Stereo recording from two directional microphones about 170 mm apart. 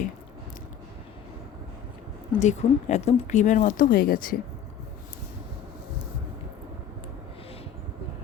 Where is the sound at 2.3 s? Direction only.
45° left (ahead or behind).